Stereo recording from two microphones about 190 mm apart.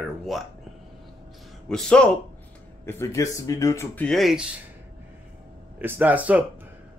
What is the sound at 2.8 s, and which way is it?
Speech, 15° left (ahead or behind).